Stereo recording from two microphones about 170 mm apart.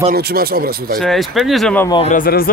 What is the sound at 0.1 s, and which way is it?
Speech, 65° right (ahead or behind).